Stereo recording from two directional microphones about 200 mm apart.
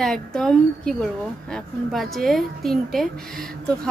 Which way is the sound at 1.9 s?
Centre (ahead or behind).